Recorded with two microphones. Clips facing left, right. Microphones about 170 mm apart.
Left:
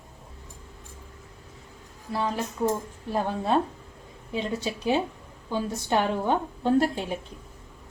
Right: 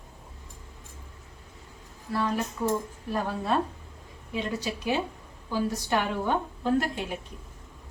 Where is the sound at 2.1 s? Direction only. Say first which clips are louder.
Even; 25° left (ahead or behind).